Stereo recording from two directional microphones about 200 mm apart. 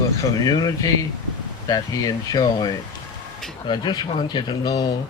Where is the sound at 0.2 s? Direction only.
20° left (ahead or behind).